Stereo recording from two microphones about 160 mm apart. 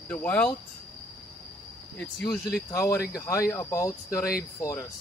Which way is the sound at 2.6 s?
20° left (ahead or behind).